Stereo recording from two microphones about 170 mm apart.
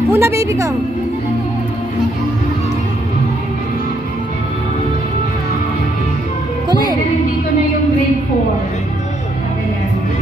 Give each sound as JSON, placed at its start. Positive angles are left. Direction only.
{"t": 0.1, "sound": "a woman's voice", "side_deg": -15}